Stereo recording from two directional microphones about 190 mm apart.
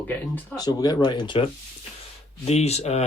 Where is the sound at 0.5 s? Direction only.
20° left (ahead or behind).